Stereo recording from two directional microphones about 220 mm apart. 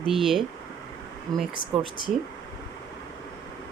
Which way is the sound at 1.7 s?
25° right (ahead or behind).